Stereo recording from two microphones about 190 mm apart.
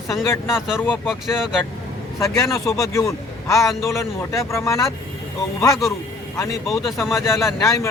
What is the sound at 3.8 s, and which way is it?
Speech, 15° left (ahead or behind).